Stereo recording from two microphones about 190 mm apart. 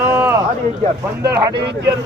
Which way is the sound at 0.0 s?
10° right (ahead or behind).